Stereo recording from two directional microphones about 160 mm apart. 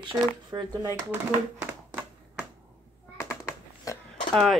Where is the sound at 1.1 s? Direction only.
15° right (ahead or behind).